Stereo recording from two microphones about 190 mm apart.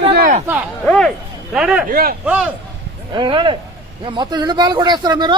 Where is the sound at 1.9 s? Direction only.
50° right (ahead or behind).